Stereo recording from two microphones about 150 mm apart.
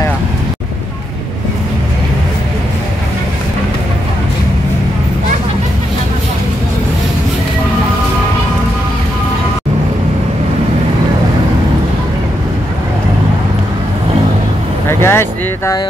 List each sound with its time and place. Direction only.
14.9 s vehicle: 15° left (ahead or behind)